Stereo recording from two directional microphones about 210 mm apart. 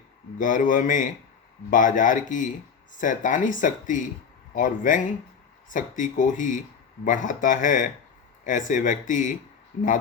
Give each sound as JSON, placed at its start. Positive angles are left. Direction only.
{"t": 0.3, "sound": "speech", "side_deg": 40}